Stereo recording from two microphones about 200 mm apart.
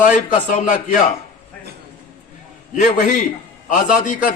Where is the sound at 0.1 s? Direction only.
40° left (ahead or behind).